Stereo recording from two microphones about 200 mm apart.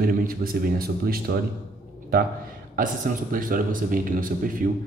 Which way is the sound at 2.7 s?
45° right (ahead or behind).